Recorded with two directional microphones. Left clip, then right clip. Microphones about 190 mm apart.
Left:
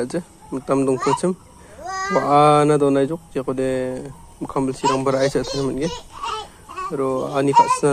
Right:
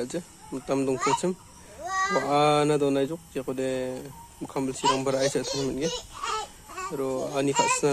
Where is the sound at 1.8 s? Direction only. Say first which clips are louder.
Left 1 dB; 50° left (ahead or behind).